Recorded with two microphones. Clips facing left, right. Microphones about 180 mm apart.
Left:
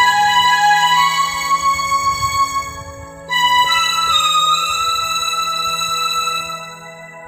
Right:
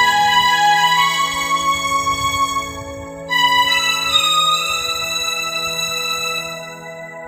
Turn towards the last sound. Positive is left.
turn(degrees=-20)  # may be behind; listen again after turning